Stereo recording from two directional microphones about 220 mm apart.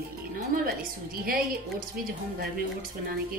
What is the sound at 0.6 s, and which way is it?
A woman's voice, 40° right (ahead or behind).